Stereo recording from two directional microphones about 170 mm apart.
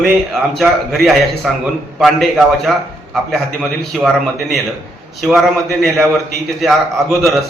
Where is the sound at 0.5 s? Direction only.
Centre (ahead or behind).